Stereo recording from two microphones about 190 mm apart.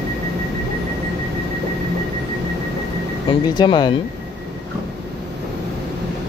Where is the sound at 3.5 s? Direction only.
25° left (ahead or behind).